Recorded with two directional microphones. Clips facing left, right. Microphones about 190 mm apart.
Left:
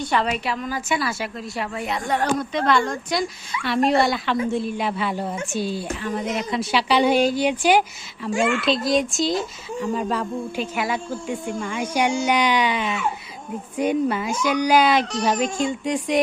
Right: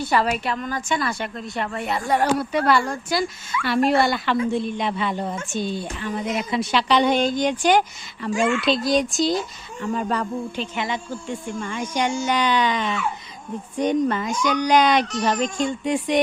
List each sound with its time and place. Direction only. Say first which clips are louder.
0.1 s speech: right 1 dB; centre (ahead or behind)
8.3 s speech: even; 30° left (ahead or behind)
8.6 s speech: even; centre (ahead or behind)